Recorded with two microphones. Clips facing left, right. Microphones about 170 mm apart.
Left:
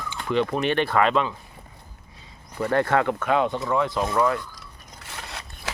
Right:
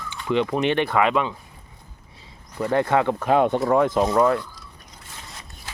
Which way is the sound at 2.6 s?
15° right (ahead or behind).